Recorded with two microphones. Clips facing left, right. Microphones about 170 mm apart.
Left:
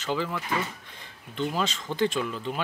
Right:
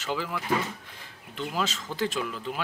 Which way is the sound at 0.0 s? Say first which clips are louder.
Left 2 dB; 10° right (ahead or behind).